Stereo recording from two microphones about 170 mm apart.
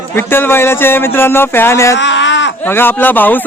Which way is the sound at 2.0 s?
90° left.